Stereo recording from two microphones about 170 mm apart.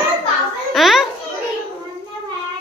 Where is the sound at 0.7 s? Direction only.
Centre (ahead or behind).